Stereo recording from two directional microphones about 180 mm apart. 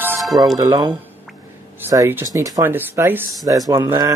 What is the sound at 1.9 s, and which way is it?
Speech, 15° right (ahead or behind).